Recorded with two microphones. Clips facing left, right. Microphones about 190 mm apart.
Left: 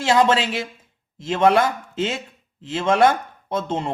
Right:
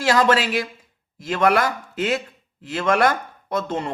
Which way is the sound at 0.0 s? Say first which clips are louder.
Left 1 dB; 25° left (ahead or behind).